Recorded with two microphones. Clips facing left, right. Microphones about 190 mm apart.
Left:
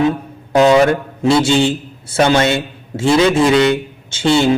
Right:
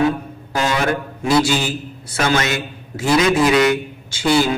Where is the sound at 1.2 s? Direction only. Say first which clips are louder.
Left 5 dB; 25° left (ahead or behind).